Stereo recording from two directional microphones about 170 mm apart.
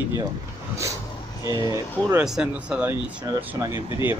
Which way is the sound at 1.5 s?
20° right (ahead or behind).